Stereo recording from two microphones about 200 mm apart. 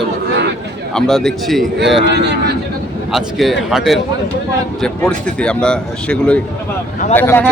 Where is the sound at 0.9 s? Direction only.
Centre (ahead or behind).